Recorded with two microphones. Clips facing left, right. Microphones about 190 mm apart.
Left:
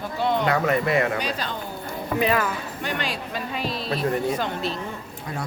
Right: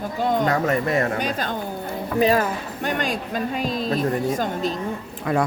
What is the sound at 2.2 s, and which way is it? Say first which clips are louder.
Speech: right 5 dB; 35° right (ahead or behind).